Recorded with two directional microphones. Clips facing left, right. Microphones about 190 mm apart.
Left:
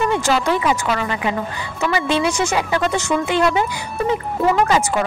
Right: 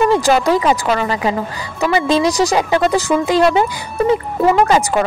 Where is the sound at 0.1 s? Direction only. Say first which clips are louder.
Right 5 dB; 35° right (ahead or behind).